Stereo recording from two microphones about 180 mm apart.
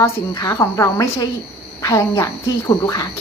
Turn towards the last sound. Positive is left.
turn(degrees=15)  # may be behind; listen again after turning